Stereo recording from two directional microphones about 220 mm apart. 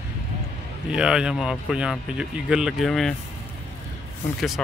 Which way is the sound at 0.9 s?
5° right (ahead or behind).